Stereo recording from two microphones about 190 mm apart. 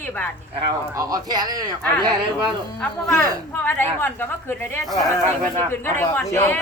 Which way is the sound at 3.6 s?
10° left (ahead or behind).